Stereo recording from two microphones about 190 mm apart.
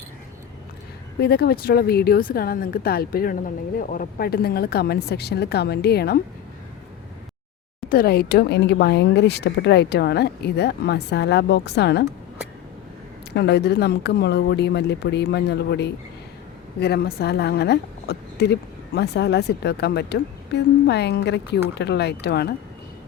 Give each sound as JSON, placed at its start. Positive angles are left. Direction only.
{"t": 1.2, "sound": "speech", "side_deg": 55}
{"t": 7.9, "sound": "speech", "side_deg": 50}
{"t": 13.3, "sound": "a woman's voice", "side_deg": 60}